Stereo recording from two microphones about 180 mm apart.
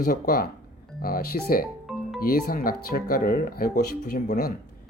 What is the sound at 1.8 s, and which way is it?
Music, centre (ahead or behind).